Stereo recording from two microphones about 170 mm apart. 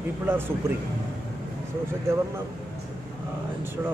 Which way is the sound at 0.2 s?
15° right (ahead or behind).